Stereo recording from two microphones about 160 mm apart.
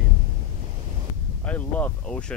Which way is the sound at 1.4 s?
10° left (ahead or behind).